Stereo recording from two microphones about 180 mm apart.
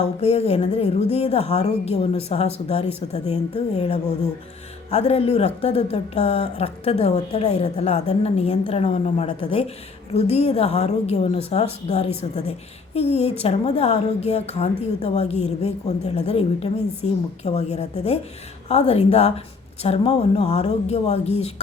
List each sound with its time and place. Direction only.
0.0 s a woman's voice: 35° left (ahead or behind)